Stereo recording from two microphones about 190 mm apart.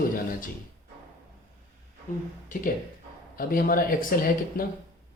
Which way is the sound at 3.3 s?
50° left (ahead or behind).